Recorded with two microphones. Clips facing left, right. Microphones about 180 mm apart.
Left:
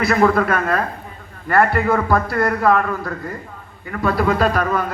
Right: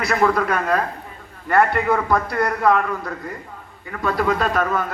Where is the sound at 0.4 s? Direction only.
15° right (ahead or behind).